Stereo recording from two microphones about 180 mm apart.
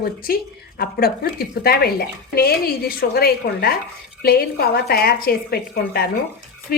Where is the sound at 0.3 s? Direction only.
55° left (ahead or behind).